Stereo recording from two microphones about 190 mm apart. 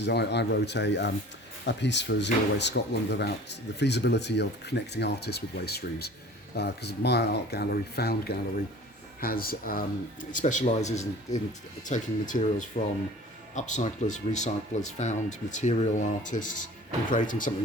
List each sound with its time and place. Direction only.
0.0 s speech: 60° left (ahead or behind); by 17.5 s 45° left (ahead or behind)